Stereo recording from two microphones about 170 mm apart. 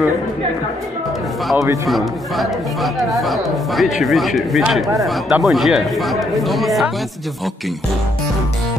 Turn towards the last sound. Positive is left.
turn(degrees=0)  # may be behind; listen again after turning